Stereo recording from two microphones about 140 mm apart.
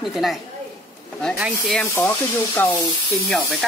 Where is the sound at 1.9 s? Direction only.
20° left (ahead or behind).